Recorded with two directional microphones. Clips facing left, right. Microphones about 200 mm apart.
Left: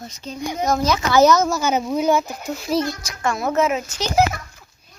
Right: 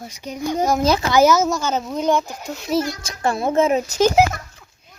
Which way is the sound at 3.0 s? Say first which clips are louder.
Right 2 dB; 35° right (ahead or behind).